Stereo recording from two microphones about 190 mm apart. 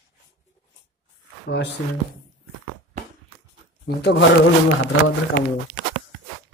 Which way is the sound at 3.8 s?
65° left (ahead or behind).